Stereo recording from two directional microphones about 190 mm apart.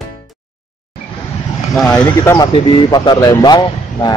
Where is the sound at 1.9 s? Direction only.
15° left (ahead or behind).